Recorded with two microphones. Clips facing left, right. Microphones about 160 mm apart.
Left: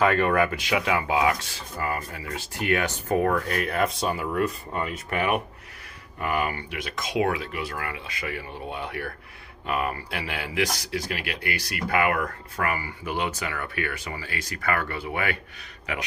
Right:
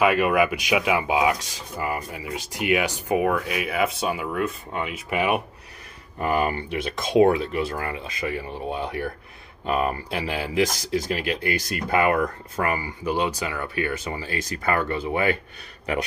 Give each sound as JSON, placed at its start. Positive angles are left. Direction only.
{"t": 0.0, "sound": "speech", "side_deg": -10}
{"t": 6.1, "sound": "speech", "side_deg": -35}
{"t": 13.0, "sound": "speech", "side_deg": -35}
{"t": 13.5, "sound": "speech", "side_deg": -20}